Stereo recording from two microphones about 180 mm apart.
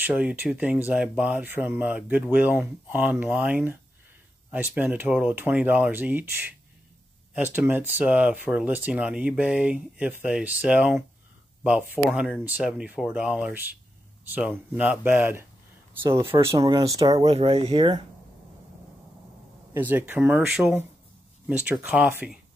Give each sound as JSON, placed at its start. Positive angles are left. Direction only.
{"t": 0.0, "sound": "speech", "side_deg": -5}
{"t": 16.3, "sound": "speech", "side_deg": -25}
{"t": 19.7, "sound": "speech", "side_deg": -10}